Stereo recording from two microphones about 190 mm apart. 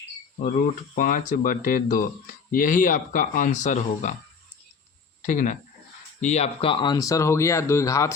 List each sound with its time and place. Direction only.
0.4 s speech: 45° left (ahead or behind)
5.2 s speech: 45° left (ahead or behind); by 8.1 s 15° left (ahead or behind)